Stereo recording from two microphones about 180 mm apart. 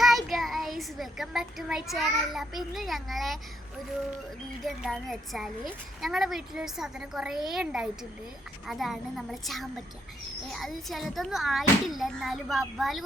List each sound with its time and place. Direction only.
0.0 s a child's voice: centre (ahead or behind)
4.6 s a child's voice: centre (ahead or behind)